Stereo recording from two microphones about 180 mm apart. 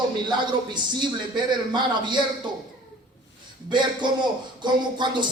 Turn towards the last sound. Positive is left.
turn(degrees=-25)  # may be behind; listen again after turning